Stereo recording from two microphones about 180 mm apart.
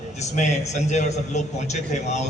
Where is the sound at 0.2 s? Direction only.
40° left (ahead or behind).